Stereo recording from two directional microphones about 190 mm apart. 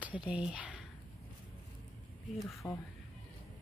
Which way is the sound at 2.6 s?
20° left (ahead or behind).